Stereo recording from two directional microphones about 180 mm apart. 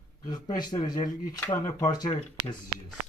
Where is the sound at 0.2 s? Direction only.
25° left (ahead or behind).